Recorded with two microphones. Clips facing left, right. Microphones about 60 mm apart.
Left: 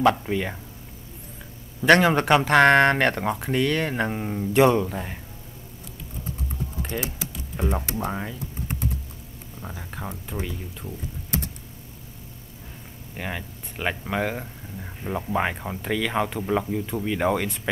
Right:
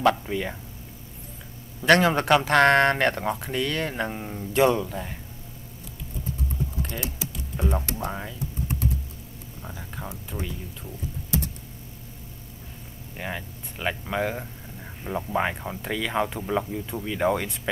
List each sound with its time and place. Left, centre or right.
0.1 s speech: centre
1.8 s speech: centre
6.8 s typing: centre
7.5 s speech: centre
9.6 s speech: centre
13.1 s speech: centre
14.2 s speech: centre
17.3 s speech: centre